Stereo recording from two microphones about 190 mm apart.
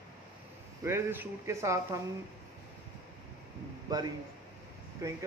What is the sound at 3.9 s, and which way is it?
Speech, 20° right (ahead or behind).